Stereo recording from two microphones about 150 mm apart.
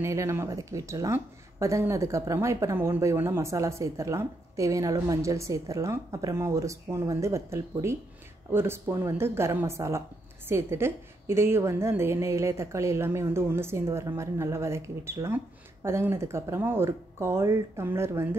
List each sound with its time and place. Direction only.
0.0 s a woman's voice: 20° right (ahead or behind)